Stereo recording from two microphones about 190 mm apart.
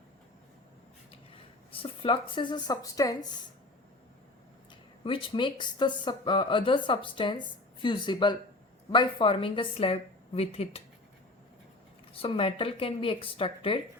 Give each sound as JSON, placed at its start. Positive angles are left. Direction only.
{"t": 1.7, "sound": "speech", "side_deg": 30}
{"t": 5.0, "sound": "a woman's voice", "side_deg": 25}
{"t": 12.1, "sound": "speech", "side_deg": 30}